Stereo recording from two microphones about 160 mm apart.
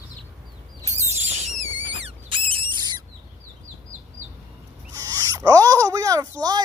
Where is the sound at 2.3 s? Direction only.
35° right (ahead or behind).